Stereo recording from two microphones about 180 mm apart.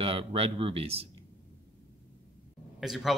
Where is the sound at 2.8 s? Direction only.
Centre (ahead or behind).